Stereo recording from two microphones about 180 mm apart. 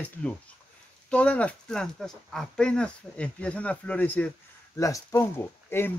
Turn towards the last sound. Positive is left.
turn(degrees=10)  # may be behind; listen again after turning